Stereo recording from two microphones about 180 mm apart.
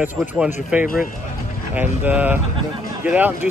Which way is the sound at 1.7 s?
10° right (ahead or behind).